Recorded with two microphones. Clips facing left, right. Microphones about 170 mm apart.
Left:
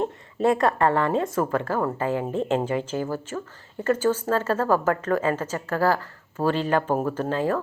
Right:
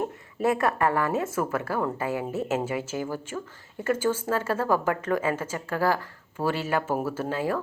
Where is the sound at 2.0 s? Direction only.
10° right (ahead or behind).